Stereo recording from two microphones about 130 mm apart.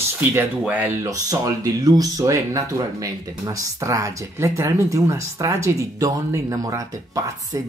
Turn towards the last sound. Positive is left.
turn(degrees=-25)  # may be behind; listen again after turning